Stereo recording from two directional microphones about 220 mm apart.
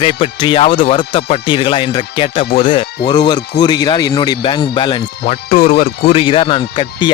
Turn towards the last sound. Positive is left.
turn(degrees=20)  # may be behind; listen again after turning